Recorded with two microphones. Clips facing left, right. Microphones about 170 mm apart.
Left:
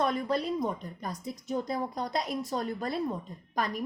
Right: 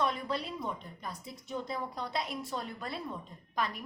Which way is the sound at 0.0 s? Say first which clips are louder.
Left 5 dB; 45° left (ahead or behind).